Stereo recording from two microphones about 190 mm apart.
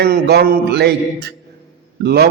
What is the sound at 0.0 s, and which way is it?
A man's voice, 55° right (ahead or behind).